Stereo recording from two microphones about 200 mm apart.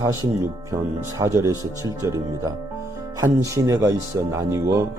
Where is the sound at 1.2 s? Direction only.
15° right (ahead or behind).